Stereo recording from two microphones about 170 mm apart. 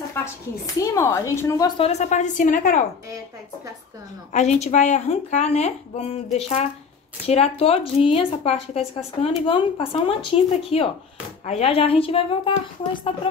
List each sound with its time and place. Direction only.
0.2 s a sound: 15° left (ahead or behind)
0.7 s speech: 15° left (ahead or behind)
1.8 s a woman's voice: 40° left (ahead or behind)
4.3 s a woman's voice: 45° left (ahead or behind)